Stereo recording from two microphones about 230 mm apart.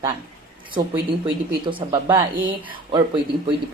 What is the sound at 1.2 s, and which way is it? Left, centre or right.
A woman's voice, right.